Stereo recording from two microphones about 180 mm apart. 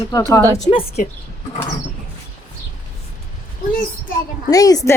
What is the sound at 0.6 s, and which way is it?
Speech, 40° left (ahead or behind).